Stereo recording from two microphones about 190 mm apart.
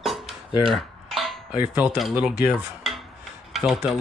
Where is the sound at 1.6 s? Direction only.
10° right (ahead or behind).